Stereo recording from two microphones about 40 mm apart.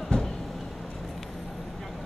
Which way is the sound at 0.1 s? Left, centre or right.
Left.